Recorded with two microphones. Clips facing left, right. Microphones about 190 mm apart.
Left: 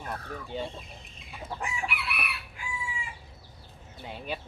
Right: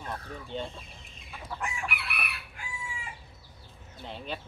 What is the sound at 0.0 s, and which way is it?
Speech, 10° left (ahead or behind).